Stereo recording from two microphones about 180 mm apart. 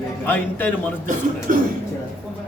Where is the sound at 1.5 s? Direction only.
45° right (ahead or behind).